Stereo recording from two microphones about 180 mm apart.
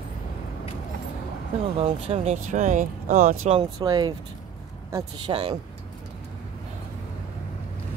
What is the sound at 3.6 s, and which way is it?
Speech, 20° right (ahead or behind).